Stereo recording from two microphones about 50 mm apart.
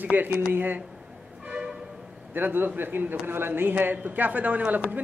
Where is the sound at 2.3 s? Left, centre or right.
Right.